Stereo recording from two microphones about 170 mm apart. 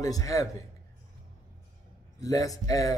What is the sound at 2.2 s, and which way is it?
Speech, 20° left (ahead or behind).